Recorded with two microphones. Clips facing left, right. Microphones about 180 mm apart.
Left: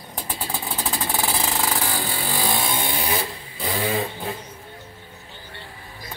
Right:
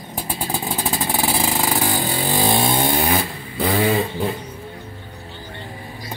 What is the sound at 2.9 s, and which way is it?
Vehicle, 60° right (ahead or behind).